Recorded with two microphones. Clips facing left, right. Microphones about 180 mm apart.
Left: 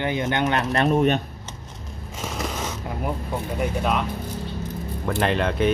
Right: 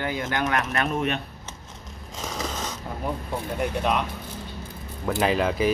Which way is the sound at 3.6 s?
Centre (ahead or behind).